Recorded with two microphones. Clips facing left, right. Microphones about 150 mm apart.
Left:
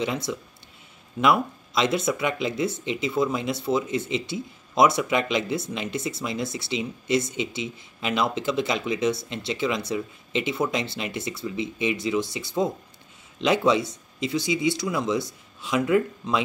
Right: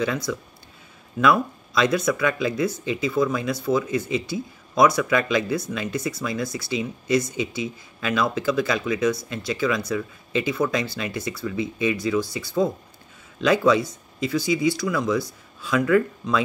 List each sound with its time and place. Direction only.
0.0 s speech: 25° left (ahead or behind)